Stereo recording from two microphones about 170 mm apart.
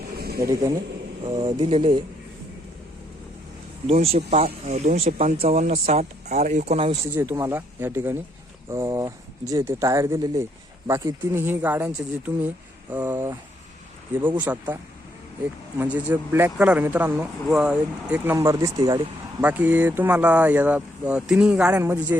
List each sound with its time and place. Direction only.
0.2 s a sound: 65° right (ahead or behind)
1.2 s speech: 30° right (ahead or behind)
3.8 s speech: 35° right (ahead or behind)
7.1 s speech: 15° right (ahead or behind)
15.8 s speech: 10° right (ahead or behind)